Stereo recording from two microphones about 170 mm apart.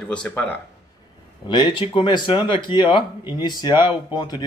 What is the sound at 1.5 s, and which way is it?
A man's voice, 30° left (ahead or behind).